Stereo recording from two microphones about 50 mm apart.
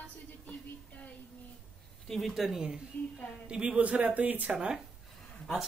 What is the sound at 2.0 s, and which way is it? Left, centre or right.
Speech, centre.